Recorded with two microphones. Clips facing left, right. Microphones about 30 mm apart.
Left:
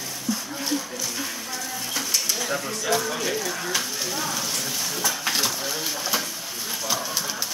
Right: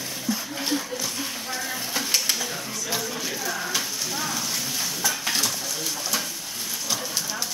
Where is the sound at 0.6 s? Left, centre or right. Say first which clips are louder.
Right 1 dB; centre.